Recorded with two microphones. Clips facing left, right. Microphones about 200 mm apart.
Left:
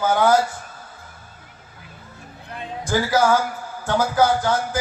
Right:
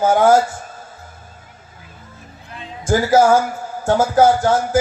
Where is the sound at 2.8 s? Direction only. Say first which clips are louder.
Right 6 dB; 45° right (ahead or behind).